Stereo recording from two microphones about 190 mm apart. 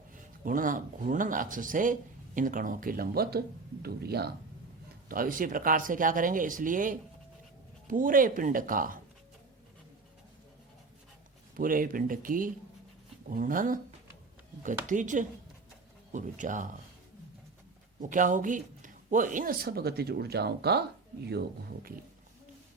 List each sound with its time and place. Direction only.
0.4 s speech: 45° right (ahead or behind)
11.5 s speech: 45° right (ahead or behind)
14.8 s speech: 40° right (ahead or behind)
18.0 s speech: 45° right (ahead or behind); by 20.8 s 60° right (ahead or behind)